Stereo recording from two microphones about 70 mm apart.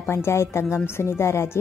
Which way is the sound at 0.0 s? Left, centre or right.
Left.